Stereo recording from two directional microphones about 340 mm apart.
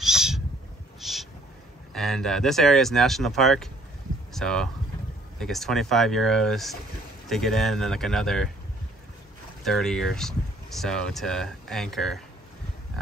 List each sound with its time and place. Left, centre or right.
0.0 s owl: centre
2.0 s speech: centre
9.6 s speech: centre